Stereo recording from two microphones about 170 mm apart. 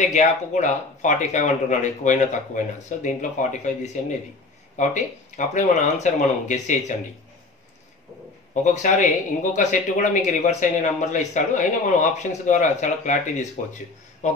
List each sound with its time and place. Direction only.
0.0 s speech: 45° left (ahead or behind)
8.8 s speech: 45° left (ahead or behind)